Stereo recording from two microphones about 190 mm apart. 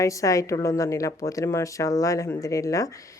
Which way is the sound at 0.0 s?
15° left (ahead or behind).